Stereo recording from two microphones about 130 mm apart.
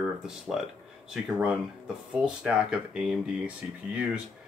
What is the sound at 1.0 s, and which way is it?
Speech, 5° right (ahead or behind).